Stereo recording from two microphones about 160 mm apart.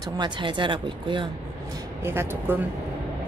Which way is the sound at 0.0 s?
30° right (ahead or behind).